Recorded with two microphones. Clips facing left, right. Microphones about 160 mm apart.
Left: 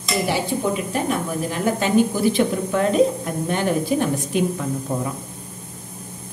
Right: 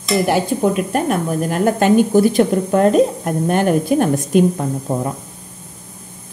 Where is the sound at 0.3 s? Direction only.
55° right (ahead or behind).